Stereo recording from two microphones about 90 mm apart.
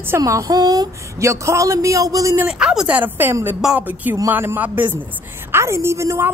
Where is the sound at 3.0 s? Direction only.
20° right (ahead or behind).